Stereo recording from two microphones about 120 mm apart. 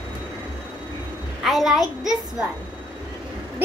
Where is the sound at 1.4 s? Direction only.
Centre (ahead or behind).